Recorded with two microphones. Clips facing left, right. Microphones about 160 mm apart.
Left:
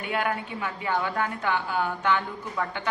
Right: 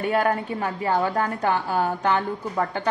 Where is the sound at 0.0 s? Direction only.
40° right (ahead or behind).